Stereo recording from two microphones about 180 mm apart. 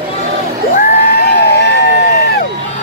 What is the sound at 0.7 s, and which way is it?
Crowd, 60° left (ahead or behind).